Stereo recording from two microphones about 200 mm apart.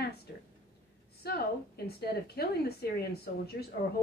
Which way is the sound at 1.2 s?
55° left (ahead or behind).